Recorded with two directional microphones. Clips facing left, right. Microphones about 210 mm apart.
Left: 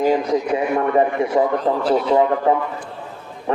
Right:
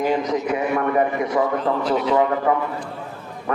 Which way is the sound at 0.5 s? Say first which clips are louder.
Left 2 dB; 30° left (ahead or behind).